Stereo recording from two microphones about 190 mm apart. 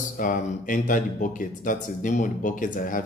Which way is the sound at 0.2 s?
45° left (ahead or behind).